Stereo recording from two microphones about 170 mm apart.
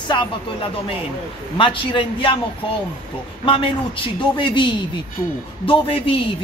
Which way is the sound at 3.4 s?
30° left (ahead or behind).